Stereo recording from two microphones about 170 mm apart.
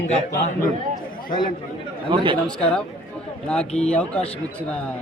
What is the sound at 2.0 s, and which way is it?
Speech, 30° right (ahead or behind).